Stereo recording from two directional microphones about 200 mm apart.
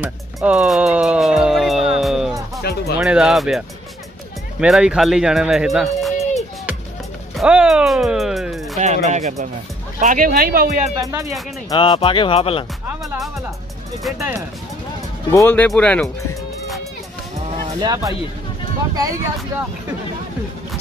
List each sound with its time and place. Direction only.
0.0 s music: 5° right (ahead or behind)
2.7 s music: 55° left (ahead or behind)
3.0 s speech: 5° right (ahead or behind)
7.3 s speech: 5° right (ahead or behind)
8.7 s speech: 35° right (ahead or behind)
11.0 s speech: 15° right (ahead or behind)
11.7 s speech: 25° left (ahead or behind)
13.0 s speech: centre (ahead or behind)
15.3 s speech: 10° left (ahead or behind)
17.7 s speech: 20° right (ahead or behind)